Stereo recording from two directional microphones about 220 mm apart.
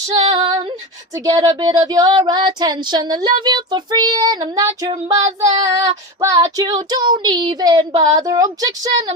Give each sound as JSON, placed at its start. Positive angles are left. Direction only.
{"t": 0.1, "sound": "female singing", "side_deg": -25}
{"t": 5.7, "sound": "child singing", "side_deg": -15}